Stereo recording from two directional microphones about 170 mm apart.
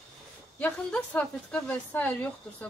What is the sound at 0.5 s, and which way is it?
A woman's voice, 5° left (ahead or behind).